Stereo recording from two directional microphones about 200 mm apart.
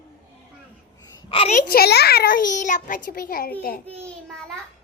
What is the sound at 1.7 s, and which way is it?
A child's voice, 50° left (ahead or behind).